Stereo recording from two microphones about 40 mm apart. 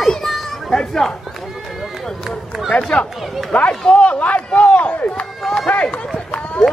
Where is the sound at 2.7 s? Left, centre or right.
Left.